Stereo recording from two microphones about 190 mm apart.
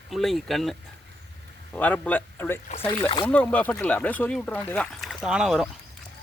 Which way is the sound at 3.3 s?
5° left (ahead or behind).